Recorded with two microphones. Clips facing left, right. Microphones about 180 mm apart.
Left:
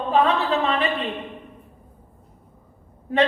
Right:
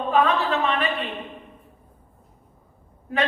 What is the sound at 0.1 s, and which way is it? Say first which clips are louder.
Speech: left 1 dB; 30° left (ahead or behind).